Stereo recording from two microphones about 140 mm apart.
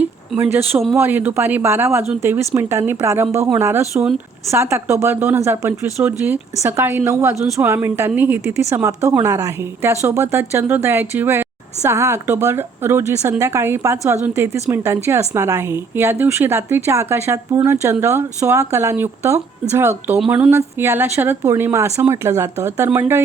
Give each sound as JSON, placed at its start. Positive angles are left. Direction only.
{"t": 0.0, "sound": "a sound", "side_deg": -15}
{"t": 0.9, "sound": "a woman's voice", "side_deg": -15}
{"t": 20.1, "sound": "speech", "side_deg": -5}